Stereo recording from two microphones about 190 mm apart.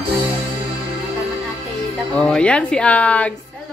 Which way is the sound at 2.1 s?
5° left (ahead or behind).